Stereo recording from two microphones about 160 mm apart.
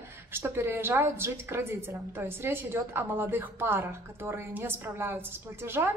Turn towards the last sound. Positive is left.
turn(degrees=-15)  # may be behind; listen again after turning